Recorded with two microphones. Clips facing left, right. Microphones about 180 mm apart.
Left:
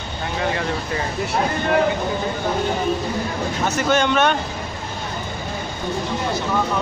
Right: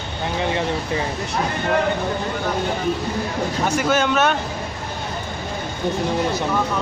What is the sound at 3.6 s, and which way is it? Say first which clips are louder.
Speech: left 1 dB; 10° right (ahead or behind).